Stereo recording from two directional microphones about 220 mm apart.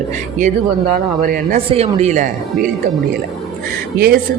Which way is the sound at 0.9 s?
40° right (ahead or behind).